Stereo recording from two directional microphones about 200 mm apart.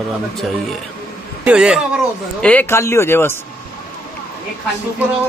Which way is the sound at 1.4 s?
5° right (ahead or behind).